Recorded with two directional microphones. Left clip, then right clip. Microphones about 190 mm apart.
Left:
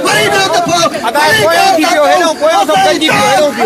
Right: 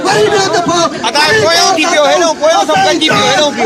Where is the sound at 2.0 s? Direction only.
40° left (ahead or behind).